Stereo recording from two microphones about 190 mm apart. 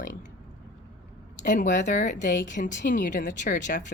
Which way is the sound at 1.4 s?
40° left (ahead or behind).